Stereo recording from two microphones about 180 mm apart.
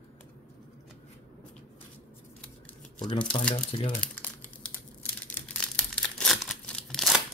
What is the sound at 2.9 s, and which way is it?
Speech, 25° left (ahead or behind).